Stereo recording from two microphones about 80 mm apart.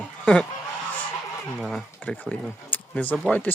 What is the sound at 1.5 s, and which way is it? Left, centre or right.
Speech, centre.